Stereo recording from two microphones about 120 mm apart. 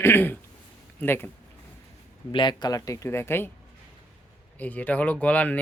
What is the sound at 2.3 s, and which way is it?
Speech, 40° left (ahead or behind).